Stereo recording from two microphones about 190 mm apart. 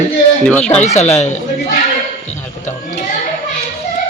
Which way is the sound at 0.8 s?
35° left (ahead or behind).